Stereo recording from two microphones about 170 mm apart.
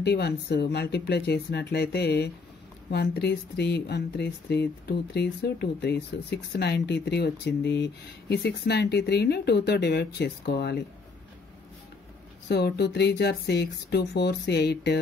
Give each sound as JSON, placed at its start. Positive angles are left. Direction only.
{"t": 0.0, "sound": "speech", "side_deg": 75}
{"t": 12.4, "sound": "speech", "side_deg": 75}